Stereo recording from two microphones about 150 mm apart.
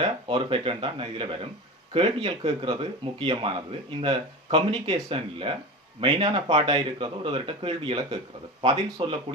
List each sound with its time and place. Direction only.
0.0 s speech: 35° right (ahead or behind)